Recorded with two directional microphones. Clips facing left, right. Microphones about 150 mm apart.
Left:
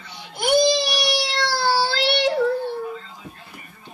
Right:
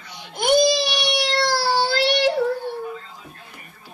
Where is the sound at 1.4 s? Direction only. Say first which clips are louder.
Left 1 dB; 15° right (ahead or behind).